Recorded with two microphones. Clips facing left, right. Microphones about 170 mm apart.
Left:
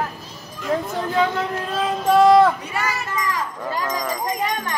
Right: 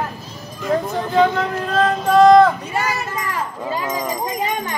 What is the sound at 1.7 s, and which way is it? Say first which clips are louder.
Music: right 3 dB; 5° left (ahead or behind).